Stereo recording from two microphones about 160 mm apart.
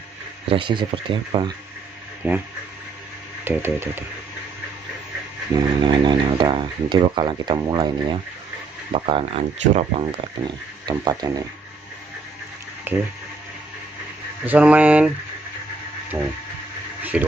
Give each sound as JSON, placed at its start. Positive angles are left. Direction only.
{"t": 0.5, "sound": "speech", "side_deg": -30}
{"t": 2.2, "sound": "speech", "side_deg": -15}
{"t": 3.4, "sound": "speech", "side_deg": -15}
{"t": 5.8, "sound": "speech", "side_deg": -25}
{"t": 10.9, "sound": "speech", "side_deg": -25}
{"t": 12.9, "sound": "speech", "side_deg": -15}
{"t": 14.4, "sound": "speech", "side_deg": -10}
{"t": 17.1, "sound": "speech", "side_deg": -10}